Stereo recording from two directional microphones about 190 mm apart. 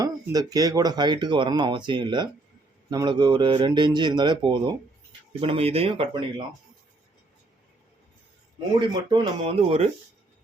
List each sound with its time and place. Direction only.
0.0 s speech: 20° right (ahead or behind)
8.9 s speech: 25° right (ahead or behind)